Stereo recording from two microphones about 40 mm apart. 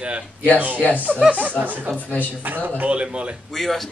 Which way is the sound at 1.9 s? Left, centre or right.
Left.